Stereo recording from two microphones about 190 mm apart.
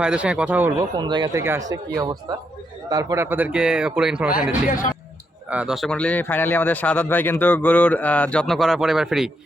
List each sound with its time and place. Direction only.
0.0 s speech: 5° right (ahead or behind)
0.9 s speech: 25° right (ahead or behind)
2.9 s speech: 15° right (ahead or behind)